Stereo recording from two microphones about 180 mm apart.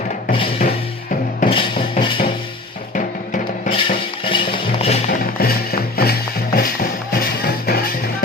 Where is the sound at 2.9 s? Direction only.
45° left (ahead or behind).